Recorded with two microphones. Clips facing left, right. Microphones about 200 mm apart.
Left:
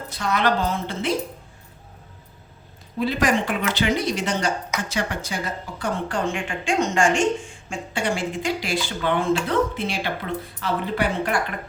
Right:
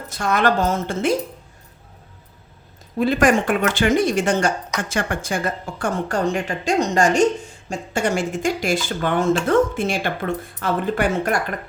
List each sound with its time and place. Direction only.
0.1 s a woman's voice: 45° right (ahead or behind)
3.0 s a woman's voice: 50° right (ahead or behind)